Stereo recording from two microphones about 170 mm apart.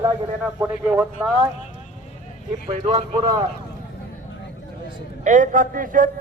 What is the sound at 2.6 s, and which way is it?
Speech, 35° right (ahead or behind).